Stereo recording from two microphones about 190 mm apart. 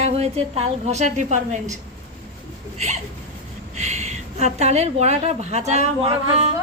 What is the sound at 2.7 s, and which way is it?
A woman's voice, 35° right (ahead or behind).